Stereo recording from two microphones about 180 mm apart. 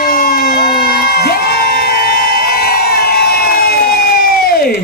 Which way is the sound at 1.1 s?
60° left (ahead or behind).